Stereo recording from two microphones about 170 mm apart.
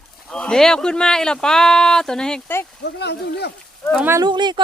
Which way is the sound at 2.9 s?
80° left.